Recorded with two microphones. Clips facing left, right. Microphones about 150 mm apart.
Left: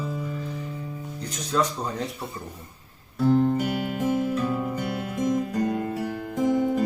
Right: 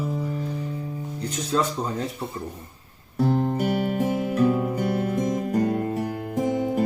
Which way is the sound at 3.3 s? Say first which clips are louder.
Left 3 dB; 40° right (ahead or behind).